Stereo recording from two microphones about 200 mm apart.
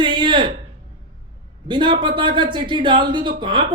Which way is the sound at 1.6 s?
25° right (ahead or behind).